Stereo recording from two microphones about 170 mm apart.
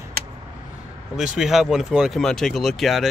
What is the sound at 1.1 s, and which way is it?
Speech, 5° right (ahead or behind).